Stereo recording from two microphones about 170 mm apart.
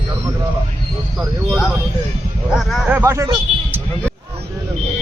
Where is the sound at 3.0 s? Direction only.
15° right (ahead or behind).